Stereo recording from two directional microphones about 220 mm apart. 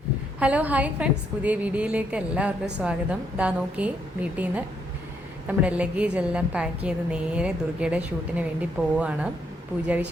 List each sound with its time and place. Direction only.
0.3 s a woman's voice: 5° right (ahead or behind)